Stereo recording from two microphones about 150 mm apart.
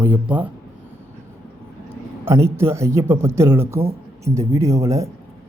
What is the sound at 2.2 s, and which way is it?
Speech, 15° right (ahead or behind).